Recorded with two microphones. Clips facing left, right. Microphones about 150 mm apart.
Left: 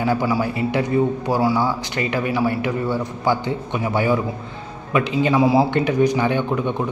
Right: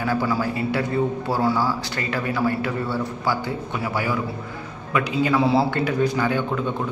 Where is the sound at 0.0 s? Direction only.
15° left (ahead or behind).